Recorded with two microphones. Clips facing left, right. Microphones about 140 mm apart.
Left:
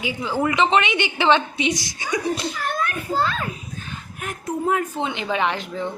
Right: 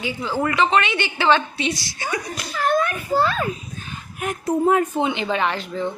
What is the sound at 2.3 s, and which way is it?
Speech, 25° left (ahead or behind).